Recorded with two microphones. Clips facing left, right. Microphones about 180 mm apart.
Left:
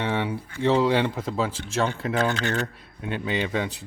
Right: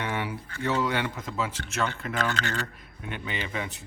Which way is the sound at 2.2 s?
15° left (ahead or behind).